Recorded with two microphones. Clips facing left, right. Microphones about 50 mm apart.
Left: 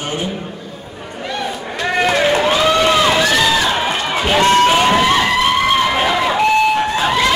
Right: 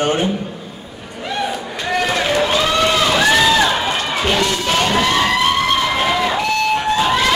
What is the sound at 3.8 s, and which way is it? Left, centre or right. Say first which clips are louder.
Run: left 1 dB; centre.